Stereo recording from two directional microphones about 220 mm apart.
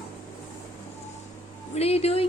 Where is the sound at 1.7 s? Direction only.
25° left (ahead or behind).